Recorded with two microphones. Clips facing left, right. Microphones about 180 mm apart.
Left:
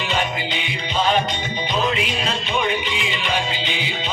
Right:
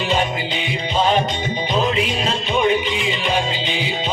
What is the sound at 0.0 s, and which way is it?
Music, 35° right (ahead or behind).